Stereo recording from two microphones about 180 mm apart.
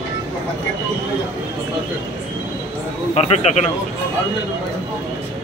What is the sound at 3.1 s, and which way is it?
Speech, 35° left (ahead or behind).